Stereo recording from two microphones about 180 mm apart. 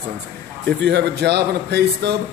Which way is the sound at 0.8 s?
70° right (ahead or behind).